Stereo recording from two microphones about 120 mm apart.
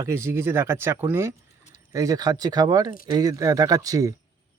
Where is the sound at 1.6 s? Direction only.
90° left.